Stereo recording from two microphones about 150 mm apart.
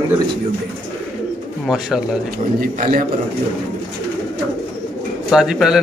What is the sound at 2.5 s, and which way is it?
Speech, 70° right (ahead or behind).